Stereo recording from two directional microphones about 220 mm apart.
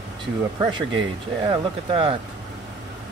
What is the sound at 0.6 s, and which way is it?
Speech, 20° right (ahead or behind).